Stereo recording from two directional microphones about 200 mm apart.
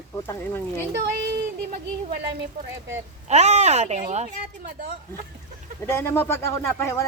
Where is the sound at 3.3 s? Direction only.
35° right (ahead or behind).